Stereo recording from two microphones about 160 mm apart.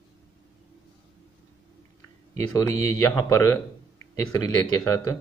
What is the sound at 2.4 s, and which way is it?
Speech, 20° left (ahead or behind).